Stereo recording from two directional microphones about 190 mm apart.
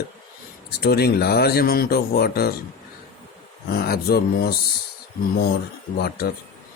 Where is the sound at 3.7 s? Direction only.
55° left (ahead or behind).